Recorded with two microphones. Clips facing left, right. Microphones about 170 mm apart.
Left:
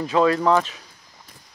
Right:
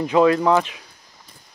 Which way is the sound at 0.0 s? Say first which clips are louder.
Right 3 dB; 15° right (ahead or behind).